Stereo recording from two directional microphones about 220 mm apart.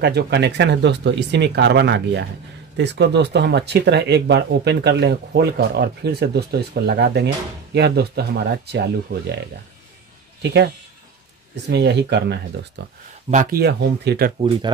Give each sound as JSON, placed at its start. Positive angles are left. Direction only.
{"t": 0.0, "sound": "speech", "side_deg": -50}
{"t": 10.4, "sound": "speech", "side_deg": -50}
{"t": 13.3, "sound": "speech", "side_deg": -40}